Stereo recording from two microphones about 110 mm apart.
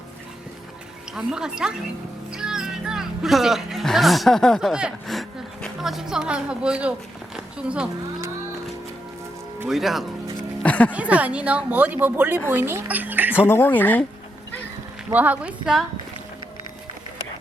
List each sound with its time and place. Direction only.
1.1 s speech: 5° right (ahead or behind)
7.3 s a sound: 10° right (ahead or behind)
9.6 s speech: centre (ahead or behind)
10.6 s speech: 10° left (ahead or behind)
10.9 s speech: 10° right (ahead or behind)
13.5 s speech: 20° left (ahead or behind)
15.1 s speech: 15° right (ahead or behind)